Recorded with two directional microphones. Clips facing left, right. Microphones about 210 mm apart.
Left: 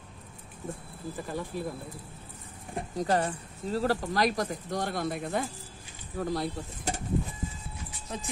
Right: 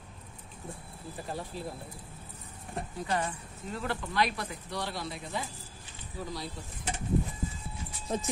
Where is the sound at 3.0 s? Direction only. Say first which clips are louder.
Left 6 dB; 40° left (ahead or behind); by 6.5 s 55° left (ahead or behind).